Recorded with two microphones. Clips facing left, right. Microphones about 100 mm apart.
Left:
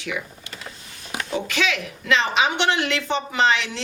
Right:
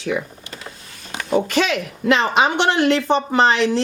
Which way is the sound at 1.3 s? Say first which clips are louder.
Right 7 dB; 40° right (ahead or behind).